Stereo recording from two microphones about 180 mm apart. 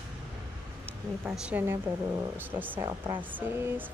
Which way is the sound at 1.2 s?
10° right (ahead or behind).